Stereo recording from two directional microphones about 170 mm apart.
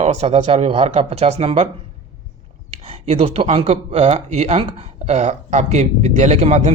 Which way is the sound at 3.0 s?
35° right (ahead or behind).